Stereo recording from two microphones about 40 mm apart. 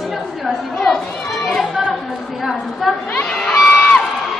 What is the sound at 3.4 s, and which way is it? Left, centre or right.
Crowd, centre.